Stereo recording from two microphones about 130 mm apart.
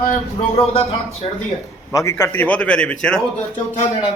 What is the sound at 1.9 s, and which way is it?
A man's voice, 25° left (ahead or behind).